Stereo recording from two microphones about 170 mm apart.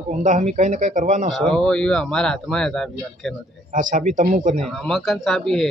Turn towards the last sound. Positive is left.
turn(degrees=0)  # may be behind; listen again after turning